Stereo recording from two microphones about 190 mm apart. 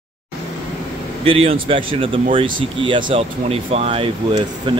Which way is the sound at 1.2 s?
30° right (ahead or behind).